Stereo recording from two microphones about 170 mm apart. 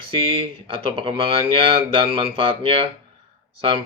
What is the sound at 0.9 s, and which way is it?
A man's voice, 30° right (ahead or behind).